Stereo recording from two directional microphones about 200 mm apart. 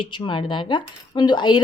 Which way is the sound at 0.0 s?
25° left (ahead or behind).